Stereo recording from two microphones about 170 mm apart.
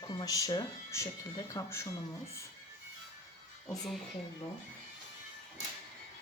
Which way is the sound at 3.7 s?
Centre (ahead or behind).